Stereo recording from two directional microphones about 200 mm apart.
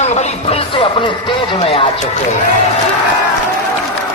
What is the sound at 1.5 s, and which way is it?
Speech, 25° left (ahead or behind).